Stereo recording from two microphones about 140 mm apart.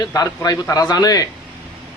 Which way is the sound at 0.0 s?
30° left (ahead or behind).